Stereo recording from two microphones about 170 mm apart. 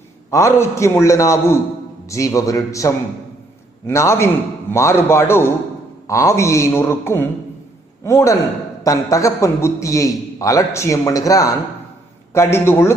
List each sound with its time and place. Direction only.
0.3 s a man's voice: 15° left (ahead or behind)